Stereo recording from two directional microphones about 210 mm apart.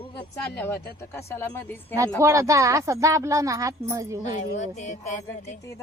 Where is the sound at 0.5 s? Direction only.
10° left (ahead or behind).